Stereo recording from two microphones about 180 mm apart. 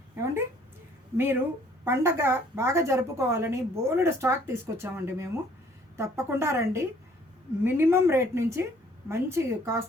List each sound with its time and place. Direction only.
1.1 s a woman's voice: 10° right (ahead or behind)